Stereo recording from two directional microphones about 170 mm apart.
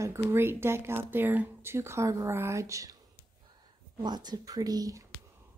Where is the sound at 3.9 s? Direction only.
25° right (ahead or behind).